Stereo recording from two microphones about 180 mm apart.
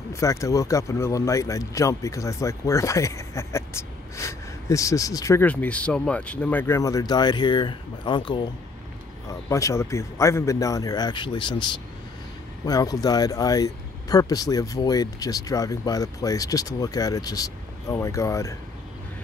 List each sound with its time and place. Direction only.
0.1 s speech: 15° left (ahead or behind)